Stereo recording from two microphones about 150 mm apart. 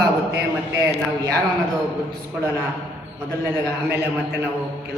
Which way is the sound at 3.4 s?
15° right (ahead or behind).